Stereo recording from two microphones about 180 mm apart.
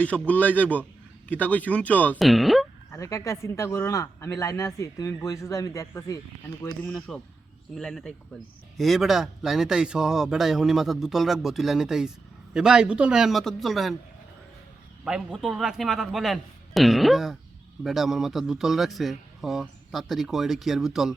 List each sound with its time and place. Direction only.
0.0 s speech: 5° left (ahead or behind)
2.9 s speech: 20° left (ahead or behind)
6.8 s speech: 5° left (ahead or behind)
15.0 s speech: 5° right (ahead or behind)